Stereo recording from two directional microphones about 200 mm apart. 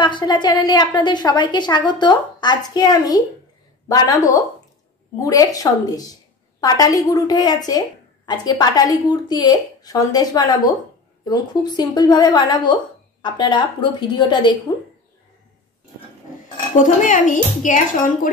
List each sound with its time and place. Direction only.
0.0 s a woman's voice: 25° left (ahead or behind)
16.7 s a woman's voice: 40° left (ahead or behind)